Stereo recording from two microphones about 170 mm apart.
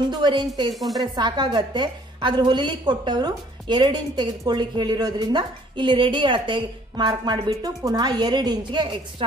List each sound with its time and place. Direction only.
0.1 s a woman's voice: 25° right (ahead or behind)
0.7 s speech: centre (ahead or behind)
1.1 s a woman's voice: 25° right (ahead or behind)